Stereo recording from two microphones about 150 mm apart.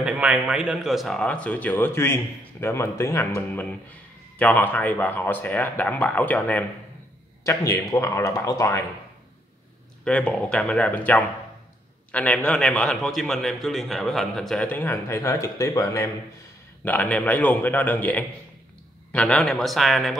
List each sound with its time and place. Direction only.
0.0 s a man's voice: 5° right (ahead or behind); by 3.3 s 20° left (ahead or behind)
4.4 s a man's voice: 10° left (ahead or behind)
10.0 s a man's voice: 5° left (ahead or behind)